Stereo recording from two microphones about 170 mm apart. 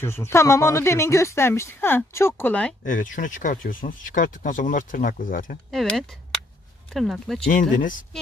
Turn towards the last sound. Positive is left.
turn(degrees=50)  # may be behind; listen again after turning